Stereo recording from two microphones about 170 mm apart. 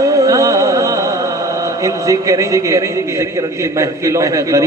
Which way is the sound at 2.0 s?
20° right (ahead or behind).